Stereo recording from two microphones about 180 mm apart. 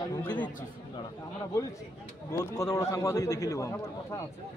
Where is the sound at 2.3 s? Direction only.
20° left (ahead or behind).